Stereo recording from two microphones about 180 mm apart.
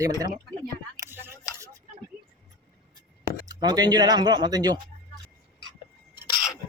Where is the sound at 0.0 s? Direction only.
20° right (ahead or behind).